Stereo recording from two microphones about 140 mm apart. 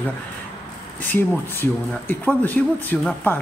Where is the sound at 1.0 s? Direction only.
15° left (ahead or behind).